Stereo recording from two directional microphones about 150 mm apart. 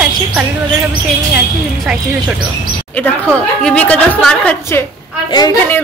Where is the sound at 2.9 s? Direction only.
10° left (ahead or behind).